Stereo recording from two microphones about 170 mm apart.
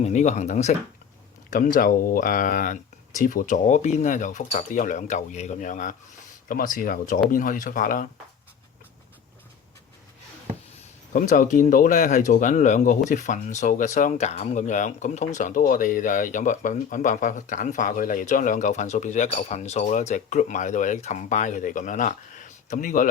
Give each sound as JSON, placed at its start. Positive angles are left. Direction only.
{"t": 0.0, "sound": "speech", "side_deg": 45}
{"t": 11.1, "sound": "speech", "side_deg": 50}